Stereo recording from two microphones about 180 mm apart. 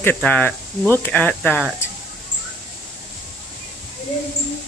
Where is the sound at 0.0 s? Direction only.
10° left (ahead or behind).